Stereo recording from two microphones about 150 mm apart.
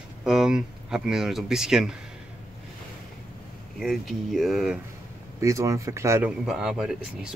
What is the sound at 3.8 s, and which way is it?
Speech, centre (ahead or behind).